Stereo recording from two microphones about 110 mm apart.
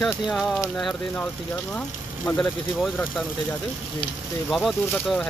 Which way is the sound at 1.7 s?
15° left (ahead or behind).